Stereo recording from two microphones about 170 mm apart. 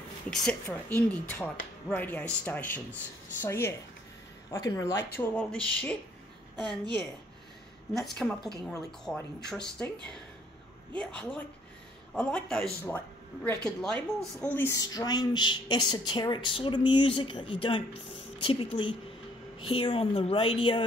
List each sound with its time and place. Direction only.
0.7 s speech: 10° left (ahead or behind)
6.5 s a woman's voice: 25° right (ahead or behind)
8.2 s a woman's voice: 5° left (ahead or behind); by 20.8 s 30° left (ahead or behind)